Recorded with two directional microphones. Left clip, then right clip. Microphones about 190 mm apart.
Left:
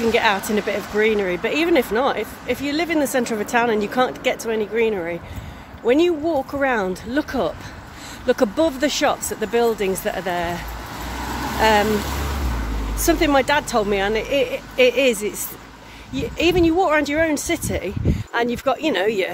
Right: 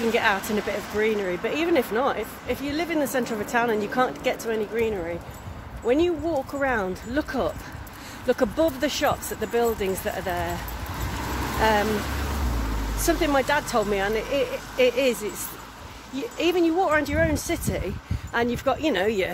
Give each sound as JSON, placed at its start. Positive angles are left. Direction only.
{"t": 0.1, "sound": "speech", "side_deg": 20}
{"t": 11.6, "sound": "speech", "side_deg": 25}
{"t": 13.0, "sound": "speech", "side_deg": 25}